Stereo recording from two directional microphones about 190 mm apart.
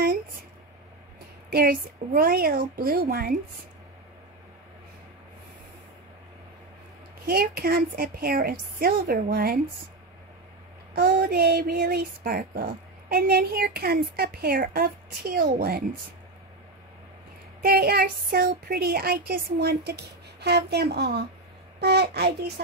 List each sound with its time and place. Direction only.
1.5 s speech: 50° right (ahead or behind)
7.2 s speech: 55° right (ahead or behind)
11.0 s speech: 50° right (ahead or behind)
17.6 s speech: 50° right (ahead or behind)